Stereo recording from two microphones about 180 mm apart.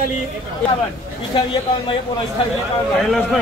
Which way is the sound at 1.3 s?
25° left (ahead or behind).